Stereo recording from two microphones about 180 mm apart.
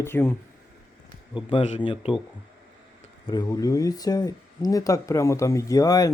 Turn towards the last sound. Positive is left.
turn(degrees=20)  # may be behind; listen again after turning